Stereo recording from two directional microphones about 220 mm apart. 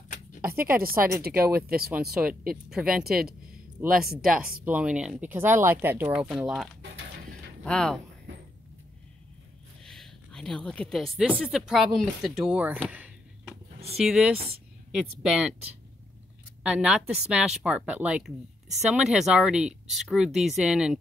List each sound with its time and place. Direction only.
0.7 s a woman's voice: 40° right (ahead or behind)
1.9 s speech: 5° right (ahead or behind)
9.8 s a woman's voice: centre (ahead or behind)
13.7 s a sound: 30° right (ahead or behind)
13.9 s speech: centre (ahead or behind)
16.6 s speech: 5° right (ahead or behind)